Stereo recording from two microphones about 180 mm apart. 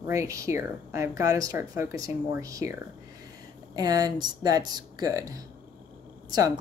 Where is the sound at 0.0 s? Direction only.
15° right (ahead or behind).